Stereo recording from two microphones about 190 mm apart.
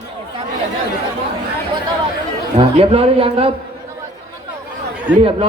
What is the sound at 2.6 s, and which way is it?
Speech, 30° right (ahead or behind).